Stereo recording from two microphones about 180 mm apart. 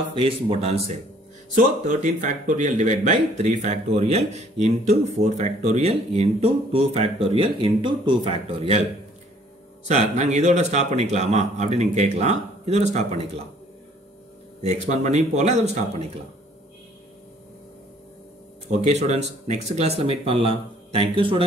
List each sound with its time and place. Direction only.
0.1 s speech: 30° right (ahead or behind)
1.6 s speech: 45° right (ahead or behind)
9.8 s speech: 40° right (ahead or behind)
14.6 s speech: 40° right (ahead or behind)
18.9 s speech: 40° right (ahead or behind)